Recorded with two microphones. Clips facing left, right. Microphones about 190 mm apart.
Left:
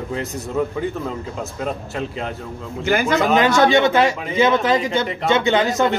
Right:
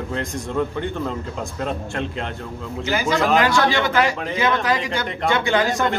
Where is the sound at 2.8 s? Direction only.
55° left (ahead or behind).